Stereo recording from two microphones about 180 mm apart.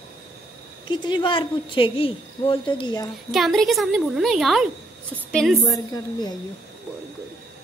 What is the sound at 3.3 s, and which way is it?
A woman's voice, centre (ahead or behind).